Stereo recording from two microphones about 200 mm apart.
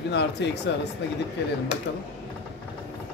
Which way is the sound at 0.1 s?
60° left (ahead or behind).